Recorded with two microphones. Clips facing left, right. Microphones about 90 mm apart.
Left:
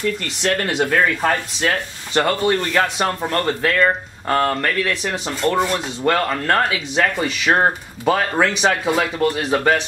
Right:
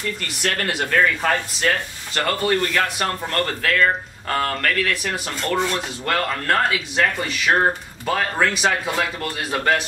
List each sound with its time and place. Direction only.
0.4 s speech: 10° left (ahead or behind)